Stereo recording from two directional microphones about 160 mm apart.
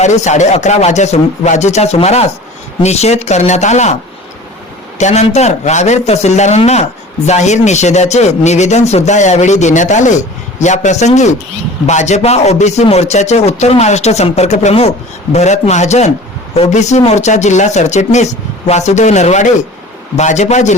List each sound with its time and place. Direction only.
0.0 s speech: 45° left (ahead or behind)
4.9 s speech: 45° left (ahead or behind)